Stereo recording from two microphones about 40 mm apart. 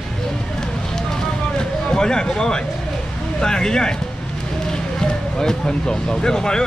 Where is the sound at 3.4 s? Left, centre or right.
Centre.